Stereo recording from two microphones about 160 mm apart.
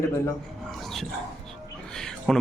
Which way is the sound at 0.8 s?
Centre (ahead or behind).